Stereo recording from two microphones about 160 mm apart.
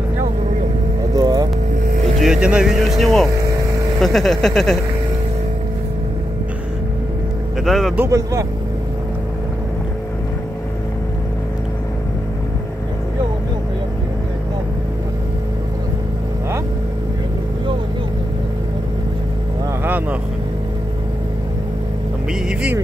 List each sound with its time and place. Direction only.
1.1 s vehicle: 25° right (ahead or behind)
2.1 s speech: 5° right (ahead or behind)
4.0 s a sound: centre (ahead or behind)
7.6 s a sound: centre (ahead or behind)
7.9 s speech: 15° right (ahead or behind)
19.8 s vehicle: 10° right (ahead or behind)